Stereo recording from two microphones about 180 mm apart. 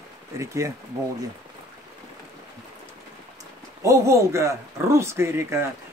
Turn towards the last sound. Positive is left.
turn(degrees=-15)  # may be behind; listen again after turning